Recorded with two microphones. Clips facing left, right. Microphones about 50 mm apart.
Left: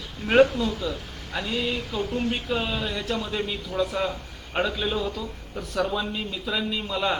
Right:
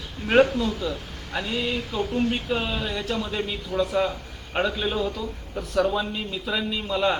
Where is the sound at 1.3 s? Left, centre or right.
Centre.